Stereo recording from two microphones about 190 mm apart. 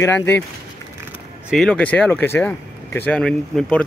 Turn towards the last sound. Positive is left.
turn(degrees=5)  # may be behind; listen again after turning